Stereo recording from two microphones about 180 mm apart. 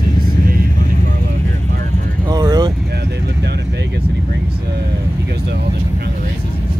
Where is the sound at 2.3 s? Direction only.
20° right (ahead or behind).